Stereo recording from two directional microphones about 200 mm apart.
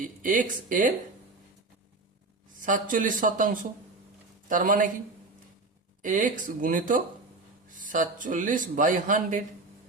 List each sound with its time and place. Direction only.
0.0 s speech: 40° right (ahead or behind)
2.6 s a man's voice: 40° right (ahead or behind)
6.0 s speech: 40° right (ahead or behind)